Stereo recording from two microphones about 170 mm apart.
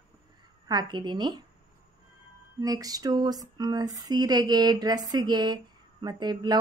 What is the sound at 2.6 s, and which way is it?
Speech, 20° right (ahead or behind).